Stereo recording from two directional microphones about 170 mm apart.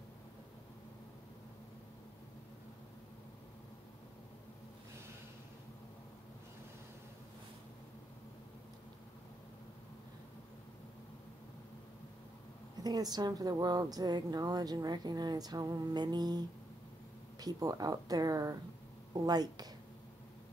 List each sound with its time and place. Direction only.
12.8 s a woman's voice: 25° right (ahead or behind)